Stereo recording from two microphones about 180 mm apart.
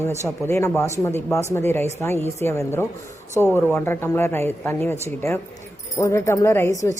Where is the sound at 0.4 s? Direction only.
15° left (ahead or behind).